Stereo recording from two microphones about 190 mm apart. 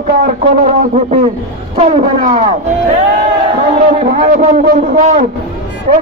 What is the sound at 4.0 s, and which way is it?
A man's voice, 35° right (ahead or behind).